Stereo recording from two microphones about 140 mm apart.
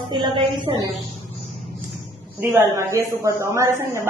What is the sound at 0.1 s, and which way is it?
Speech, 35° right (ahead or behind).